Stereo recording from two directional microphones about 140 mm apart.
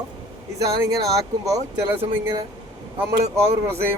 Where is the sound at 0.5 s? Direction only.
25° right (ahead or behind).